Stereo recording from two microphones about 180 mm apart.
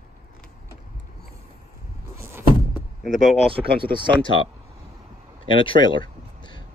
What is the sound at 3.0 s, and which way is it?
Speech, centre (ahead or behind).